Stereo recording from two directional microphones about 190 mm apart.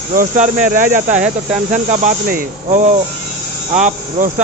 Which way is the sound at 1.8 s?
40° right (ahead or behind).